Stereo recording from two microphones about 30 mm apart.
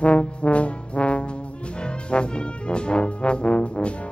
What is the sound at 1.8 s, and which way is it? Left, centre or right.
Brass instrument, left.